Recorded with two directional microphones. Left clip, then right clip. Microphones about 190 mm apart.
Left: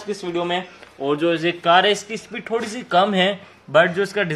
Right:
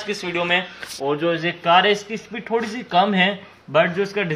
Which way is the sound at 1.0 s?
25° left (ahead or behind).